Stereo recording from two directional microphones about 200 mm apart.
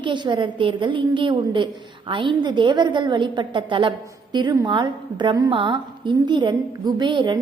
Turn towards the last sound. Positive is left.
turn(degrees=-25)  # may be behind; listen again after turning